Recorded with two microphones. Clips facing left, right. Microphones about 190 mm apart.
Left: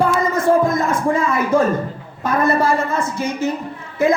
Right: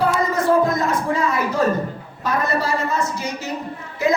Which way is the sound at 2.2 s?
50° left (ahead or behind).